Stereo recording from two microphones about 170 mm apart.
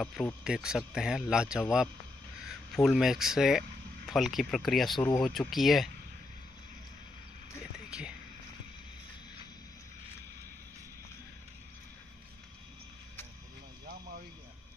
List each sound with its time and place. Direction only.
0.0 s speech: 5° left (ahead or behind)